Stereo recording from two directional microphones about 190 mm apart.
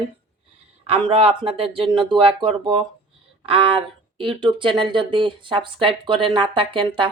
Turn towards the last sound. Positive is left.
turn(degrees=-25)  # may be behind; listen again after turning